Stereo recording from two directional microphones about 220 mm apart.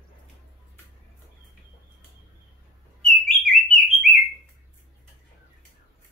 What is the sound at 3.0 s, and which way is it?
Bird, 5° left (ahead or behind).